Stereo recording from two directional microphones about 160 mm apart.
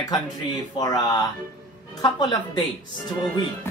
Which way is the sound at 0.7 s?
25° left (ahead or behind).